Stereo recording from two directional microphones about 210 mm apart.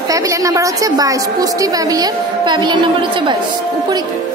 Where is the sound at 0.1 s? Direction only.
15° right (ahead or behind).